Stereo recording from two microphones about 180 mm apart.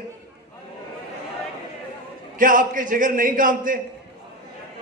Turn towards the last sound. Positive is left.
turn(degrees=-50)  # may be behind; listen again after turning